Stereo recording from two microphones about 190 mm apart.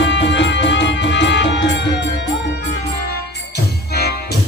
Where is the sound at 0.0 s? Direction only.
70° left (ahead or behind).